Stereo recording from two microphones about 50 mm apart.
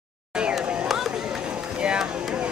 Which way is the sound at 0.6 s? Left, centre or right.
Centre.